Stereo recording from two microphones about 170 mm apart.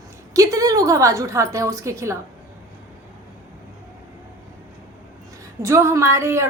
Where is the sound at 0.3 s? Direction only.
20° right (ahead or behind).